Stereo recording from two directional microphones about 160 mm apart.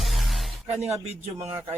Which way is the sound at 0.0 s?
Centre (ahead or behind).